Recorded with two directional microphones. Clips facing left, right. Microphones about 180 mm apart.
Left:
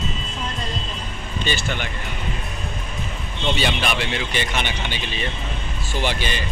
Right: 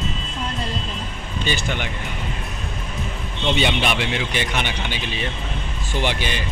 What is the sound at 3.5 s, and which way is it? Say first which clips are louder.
A man's voice: right 2 dB; 20° right (ahead or behind).